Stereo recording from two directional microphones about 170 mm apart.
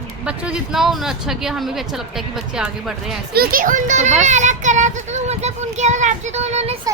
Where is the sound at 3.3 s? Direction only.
55° right (ahead or behind).